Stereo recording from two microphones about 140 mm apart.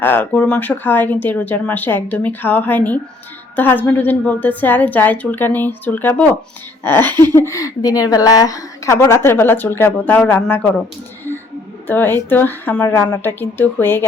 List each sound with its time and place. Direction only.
0.0 s a woman's voice: 15° left (ahead or behind)
11.9 s speech: 15° left (ahead or behind)
12.9 s a woman's voice: 25° left (ahead or behind)
13.2 s speech: 15° left (ahead or behind)